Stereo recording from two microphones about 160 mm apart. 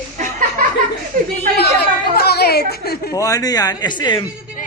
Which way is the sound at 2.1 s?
80° left.